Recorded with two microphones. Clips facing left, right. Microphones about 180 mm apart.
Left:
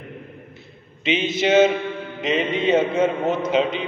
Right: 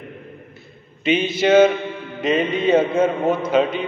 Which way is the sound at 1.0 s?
25° left (ahead or behind).